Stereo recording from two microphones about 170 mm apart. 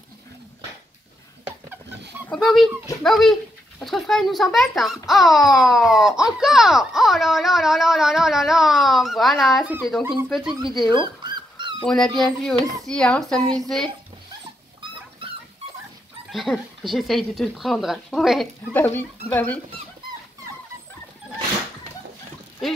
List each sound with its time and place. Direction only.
2.2 s a child's voice: centre (ahead or behind)
11.2 s dog: 25° right (ahead or behind)
11.8 s a child's voice: 5° left (ahead or behind)
16.3 s a child's voice: centre (ahead or behind)
18.7 s speech: 10° left (ahead or behind)